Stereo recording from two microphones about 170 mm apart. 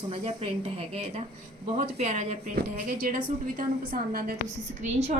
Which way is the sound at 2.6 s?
55° right (ahead or behind).